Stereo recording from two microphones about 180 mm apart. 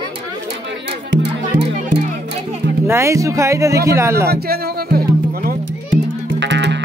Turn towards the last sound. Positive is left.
turn(degrees=-80)